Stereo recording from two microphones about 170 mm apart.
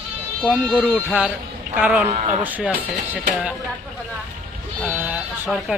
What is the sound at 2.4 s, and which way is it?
Speech, 10° right (ahead or behind).